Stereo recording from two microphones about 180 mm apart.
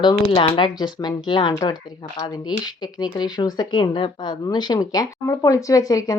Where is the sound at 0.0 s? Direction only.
30° left (ahead or behind).